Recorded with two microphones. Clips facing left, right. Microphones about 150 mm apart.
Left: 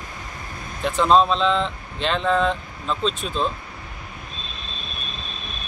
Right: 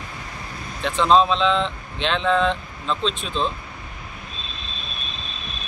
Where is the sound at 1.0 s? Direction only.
5° left (ahead or behind).